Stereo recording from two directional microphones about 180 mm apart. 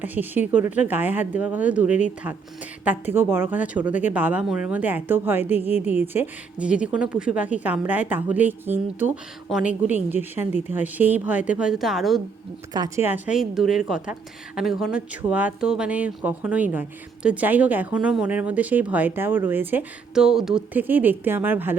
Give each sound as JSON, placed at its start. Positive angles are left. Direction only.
{"t": 0.0, "sound": "speech", "side_deg": -10}
{"t": 12.7, "sound": "speech", "side_deg": -20}
{"t": 13.1, "sound": "a woman's voice", "side_deg": -10}